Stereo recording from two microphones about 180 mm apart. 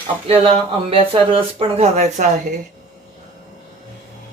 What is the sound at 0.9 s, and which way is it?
Speech, 30° right (ahead or behind).